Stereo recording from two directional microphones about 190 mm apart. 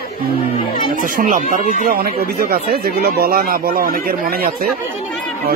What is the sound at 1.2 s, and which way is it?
Speech, 45° right (ahead or behind).